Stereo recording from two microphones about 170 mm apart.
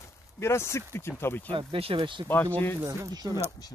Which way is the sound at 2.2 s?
10° left (ahead or behind).